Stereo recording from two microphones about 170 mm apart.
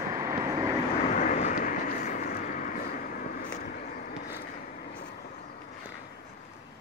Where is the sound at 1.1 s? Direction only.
45° left (ahead or behind).